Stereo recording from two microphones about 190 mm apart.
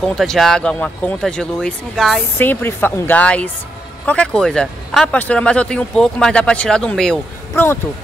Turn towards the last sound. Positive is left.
turn(degrees=5)  # may be behind; listen again after turning